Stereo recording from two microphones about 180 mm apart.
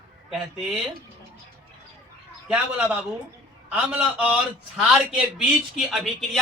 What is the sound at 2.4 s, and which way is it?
A man's voice, 5° right (ahead or behind).